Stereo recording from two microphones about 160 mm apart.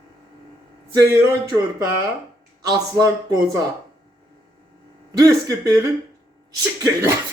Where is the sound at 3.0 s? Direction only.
20° right (ahead or behind).